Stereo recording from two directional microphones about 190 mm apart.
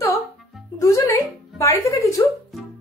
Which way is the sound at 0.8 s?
15° left (ahead or behind).